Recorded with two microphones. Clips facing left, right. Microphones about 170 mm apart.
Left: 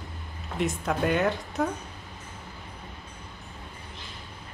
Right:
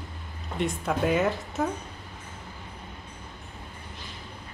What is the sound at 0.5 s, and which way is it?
Speech, centre (ahead or behind).